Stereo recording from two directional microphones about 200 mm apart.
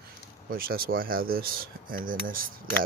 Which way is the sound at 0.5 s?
45° right (ahead or behind).